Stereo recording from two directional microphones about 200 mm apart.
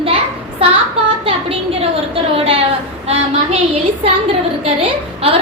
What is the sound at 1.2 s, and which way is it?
A woman's voice, 30° right (ahead or behind).